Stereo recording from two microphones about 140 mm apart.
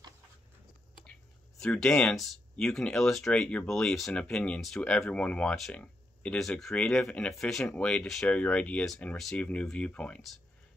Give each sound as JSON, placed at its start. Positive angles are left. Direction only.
{"t": 1.6, "sound": "speech", "side_deg": 5}